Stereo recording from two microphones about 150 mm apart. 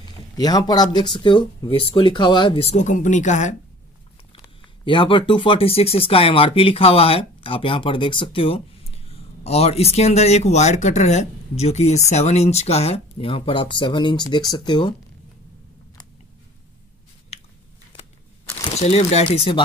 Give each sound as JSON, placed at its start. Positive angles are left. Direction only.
{"t": 0.0, "sound": "speech", "side_deg": 25}
{"t": 2.7, "sound": "speech", "side_deg": 55}
{"t": 4.8, "sound": "speech", "side_deg": 35}
{"t": 17.3, "sound": "biting", "side_deg": 45}
{"t": 18.8, "sound": "speech", "side_deg": 45}